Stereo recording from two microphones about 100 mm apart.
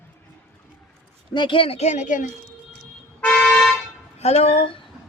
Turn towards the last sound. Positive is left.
turn(degrees=90)